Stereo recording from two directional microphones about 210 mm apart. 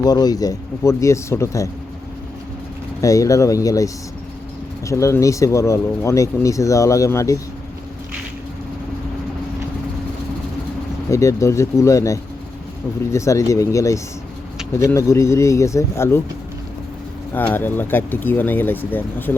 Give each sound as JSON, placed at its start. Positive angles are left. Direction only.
{"t": 0.0, "sound": "speech", "side_deg": 20}
{"t": 3.0, "sound": "speech", "side_deg": 15}
{"t": 11.1, "sound": "speech", "side_deg": 15}
{"t": 17.3, "sound": "speech", "side_deg": 10}